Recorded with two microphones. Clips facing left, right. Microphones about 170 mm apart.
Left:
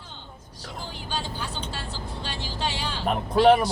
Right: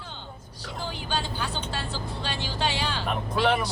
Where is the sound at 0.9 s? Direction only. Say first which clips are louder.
Right 2 dB; 70° right (ahead or behind).